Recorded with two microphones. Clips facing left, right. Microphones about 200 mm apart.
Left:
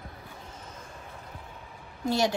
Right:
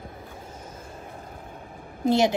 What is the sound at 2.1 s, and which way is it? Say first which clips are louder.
Speech: right 5 dB; 20° right (ahead or behind).